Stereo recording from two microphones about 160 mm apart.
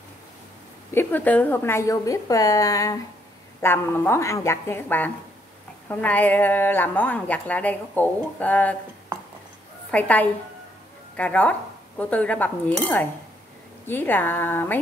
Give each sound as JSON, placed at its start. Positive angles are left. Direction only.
{"t": 0.9, "sound": "a woman's voice", "side_deg": 10}
{"t": 9.8, "sound": "a woman's voice", "side_deg": 10}